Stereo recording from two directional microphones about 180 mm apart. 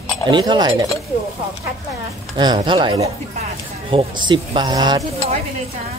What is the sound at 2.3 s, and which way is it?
Speech, 25° right (ahead or behind).